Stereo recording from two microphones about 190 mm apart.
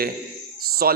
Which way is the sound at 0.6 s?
50° right (ahead or behind).